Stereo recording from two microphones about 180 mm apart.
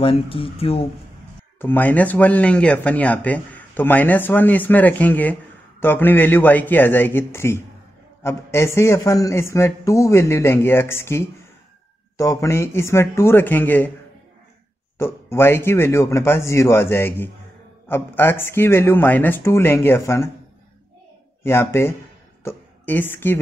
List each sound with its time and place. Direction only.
0.0 s speech: 30° left (ahead or behind)
1.6 s speech: 10° left (ahead or behind)
15.0 s speech: 15° left (ahead or behind)
21.4 s speech: 15° left (ahead or behind)